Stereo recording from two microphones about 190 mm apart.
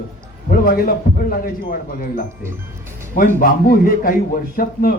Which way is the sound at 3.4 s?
50° left (ahead or behind).